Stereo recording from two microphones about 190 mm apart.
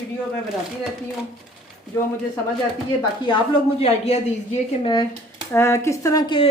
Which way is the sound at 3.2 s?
30° left (ahead or behind).